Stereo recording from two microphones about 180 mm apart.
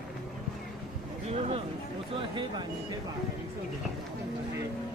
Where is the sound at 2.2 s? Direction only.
25° right (ahead or behind).